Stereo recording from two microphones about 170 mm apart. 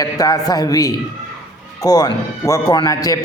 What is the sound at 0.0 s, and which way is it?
A man's voice, 20° left (ahead or behind).